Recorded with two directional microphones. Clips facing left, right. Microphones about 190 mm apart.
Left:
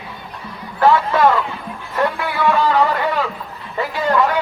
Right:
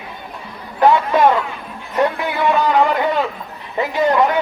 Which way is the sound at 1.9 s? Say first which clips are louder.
Right 2 dB; 20° right (ahead or behind).